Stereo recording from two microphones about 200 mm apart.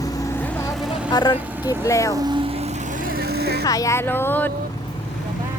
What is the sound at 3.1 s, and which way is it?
Vehicle, 50° right (ahead or behind).